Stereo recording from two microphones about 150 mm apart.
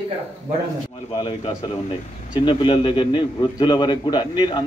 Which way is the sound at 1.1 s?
30° left (ahead or behind).